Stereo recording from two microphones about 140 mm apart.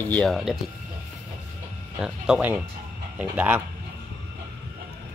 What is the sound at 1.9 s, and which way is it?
Speech, 5° right (ahead or behind).